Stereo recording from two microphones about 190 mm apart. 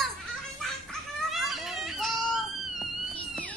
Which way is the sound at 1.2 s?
Centre (ahead or behind).